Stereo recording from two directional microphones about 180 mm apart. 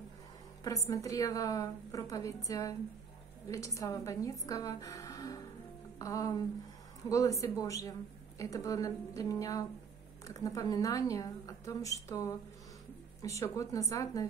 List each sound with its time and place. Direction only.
0.7 s a woman's voice: 20° left (ahead or behind)